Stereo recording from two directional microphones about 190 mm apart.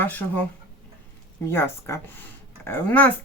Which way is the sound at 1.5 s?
15° left (ahead or behind).